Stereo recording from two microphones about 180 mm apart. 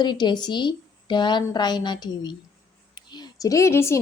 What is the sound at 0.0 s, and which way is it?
A woman's voice, 25° left (ahead or behind).